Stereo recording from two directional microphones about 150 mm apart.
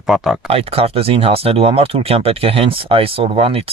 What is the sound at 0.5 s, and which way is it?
Speech, 40° right (ahead or behind).